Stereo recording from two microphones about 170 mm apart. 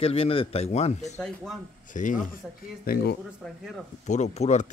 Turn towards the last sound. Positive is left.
turn(degrees=45)  # may be behind; listen again after turning